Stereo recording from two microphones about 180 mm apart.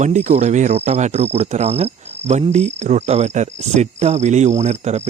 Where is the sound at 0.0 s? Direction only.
40° right (ahead or behind).